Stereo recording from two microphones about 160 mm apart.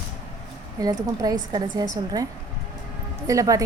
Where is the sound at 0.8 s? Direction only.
25° right (ahead or behind).